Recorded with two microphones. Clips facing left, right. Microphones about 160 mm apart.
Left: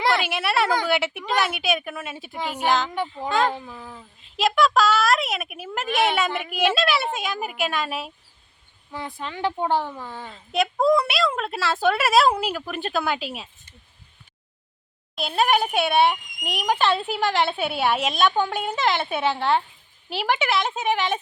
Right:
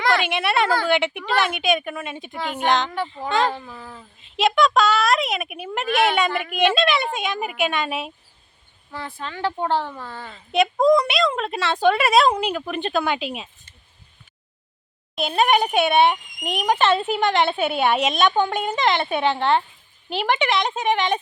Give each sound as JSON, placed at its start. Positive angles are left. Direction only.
{"t": 0.1, "sound": "a woman's voice", "side_deg": 5}
{"t": 0.7, "sound": "speech", "side_deg": 15}
{"t": 0.9, "sound": "speech", "side_deg": 5}
{"t": 8.9, "sound": "speech", "side_deg": 15}
{"t": 10.2, "sound": "speech", "side_deg": 0}
{"t": 15.1, "sound": "speech", "side_deg": 0}